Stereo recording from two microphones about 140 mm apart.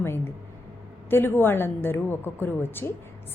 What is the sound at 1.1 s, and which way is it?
A woman's voice, 15° left (ahead or behind).